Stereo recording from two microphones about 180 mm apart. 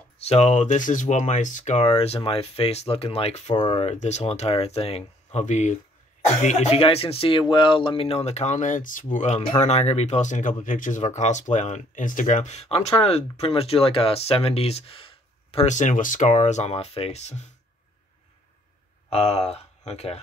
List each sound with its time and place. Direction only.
0.2 s speech: 35° left (ahead or behind)
19.0 s speech: 35° left (ahead or behind)